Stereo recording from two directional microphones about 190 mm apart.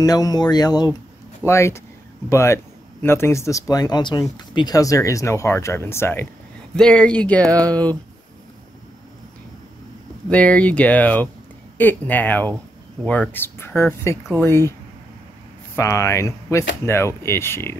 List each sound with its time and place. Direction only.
0.0 s speech: 20° left (ahead or behind)
10.3 s speech: 5° left (ahead or behind)
15.7 s speech: 15° left (ahead or behind)